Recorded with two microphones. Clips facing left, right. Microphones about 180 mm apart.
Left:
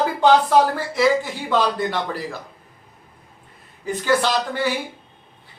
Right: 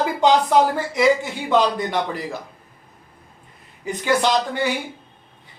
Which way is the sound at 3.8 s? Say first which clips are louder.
Even; 15° right (ahead or behind).